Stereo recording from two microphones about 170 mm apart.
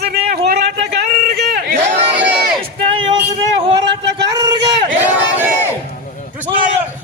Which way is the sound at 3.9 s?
90° right.